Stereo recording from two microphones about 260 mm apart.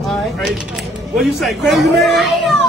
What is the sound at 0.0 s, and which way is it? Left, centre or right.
Speech, centre.